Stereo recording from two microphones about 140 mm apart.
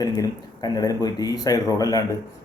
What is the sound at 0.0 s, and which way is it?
A man's voice, 25° left (ahead or behind).